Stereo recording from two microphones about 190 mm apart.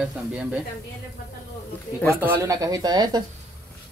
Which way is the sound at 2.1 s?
10° right (ahead or behind).